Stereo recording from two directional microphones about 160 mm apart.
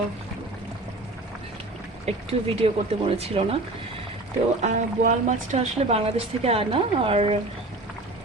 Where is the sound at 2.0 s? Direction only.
40° right (ahead or behind).